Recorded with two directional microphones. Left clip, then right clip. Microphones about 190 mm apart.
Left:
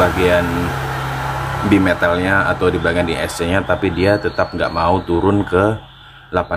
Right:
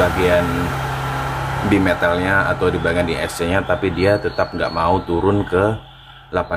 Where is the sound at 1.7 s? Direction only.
5° left (ahead or behind).